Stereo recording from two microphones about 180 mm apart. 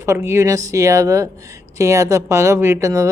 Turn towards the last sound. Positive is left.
turn(degrees=-15)  # may be behind; listen again after turning